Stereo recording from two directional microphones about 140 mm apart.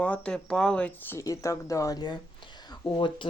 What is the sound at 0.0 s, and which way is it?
Speech, 10° left (ahead or behind).